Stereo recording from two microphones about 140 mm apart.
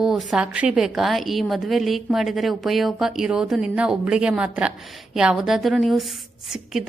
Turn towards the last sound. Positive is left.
turn(degrees=0)  # may be behind; listen again after turning